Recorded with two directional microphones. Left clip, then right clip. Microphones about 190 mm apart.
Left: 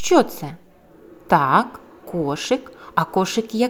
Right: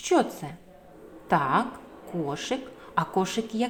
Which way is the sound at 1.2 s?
30° left (ahead or behind).